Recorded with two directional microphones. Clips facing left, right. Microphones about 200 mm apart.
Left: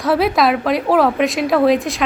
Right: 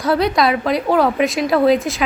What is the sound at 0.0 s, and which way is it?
A woman's voice, 5° left (ahead or behind).